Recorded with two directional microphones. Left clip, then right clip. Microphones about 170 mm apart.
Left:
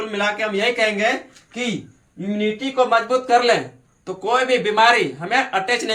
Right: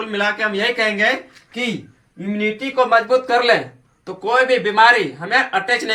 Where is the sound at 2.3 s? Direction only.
5° left (ahead or behind).